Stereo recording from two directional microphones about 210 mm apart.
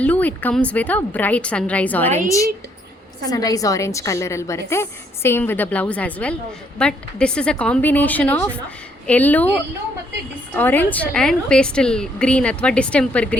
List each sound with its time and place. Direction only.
0.0 s a woman's voice: 5° left (ahead or behind)
10.5 s a woman's voice: 10° left (ahead or behind)